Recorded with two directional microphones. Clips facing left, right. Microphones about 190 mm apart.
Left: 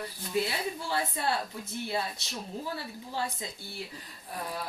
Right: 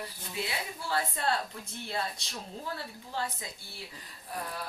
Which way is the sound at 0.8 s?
15° left (ahead or behind).